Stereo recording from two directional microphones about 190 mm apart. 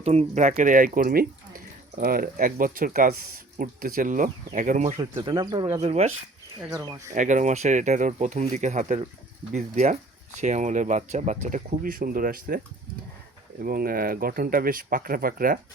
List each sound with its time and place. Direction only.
0.0 s speech: 35° right (ahead or behind); by 5.8 s 20° right (ahead or behind)
5.8 s speech: 35° right (ahead or behind)
6.7 s speech: 15° right (ahead or behind)
7.1 s speech: 40° right (ahead or behind)
13.6 s speech: 50° right (ahead or behind)